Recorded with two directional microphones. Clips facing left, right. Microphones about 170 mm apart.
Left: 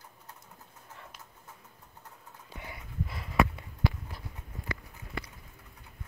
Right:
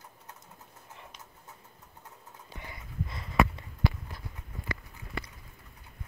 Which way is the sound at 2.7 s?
10° left (ahead or behind).